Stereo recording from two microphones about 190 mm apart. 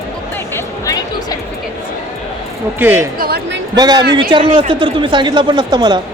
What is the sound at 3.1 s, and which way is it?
Speech, 55° right (ahead or behind).